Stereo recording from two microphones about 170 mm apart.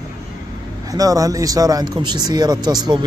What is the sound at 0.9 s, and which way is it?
Speech, 20° right (ahead or behind).